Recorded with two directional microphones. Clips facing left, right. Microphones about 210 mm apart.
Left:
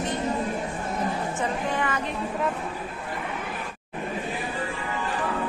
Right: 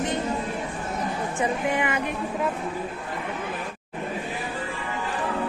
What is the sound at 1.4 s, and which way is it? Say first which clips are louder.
Speech: right 4 dB; 15° right (ahead or behind).